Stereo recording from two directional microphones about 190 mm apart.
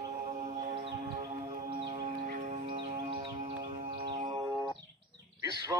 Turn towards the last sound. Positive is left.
turn(degrees=-15)  # may be behind; listen again after turning